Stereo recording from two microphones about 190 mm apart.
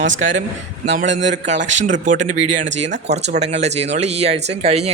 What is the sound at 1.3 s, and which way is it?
Speech, 40° right (ahead or behind).